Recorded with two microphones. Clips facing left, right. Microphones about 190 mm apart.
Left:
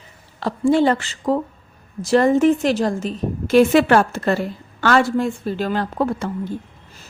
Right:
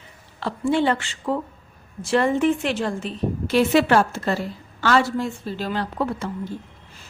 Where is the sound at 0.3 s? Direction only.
40° left (ahead or behind).